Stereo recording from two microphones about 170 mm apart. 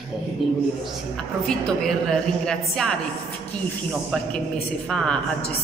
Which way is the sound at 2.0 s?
5° left (ahead or behind).